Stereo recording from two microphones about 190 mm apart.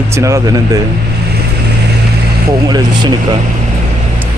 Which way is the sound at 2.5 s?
20° right (ahead or behind).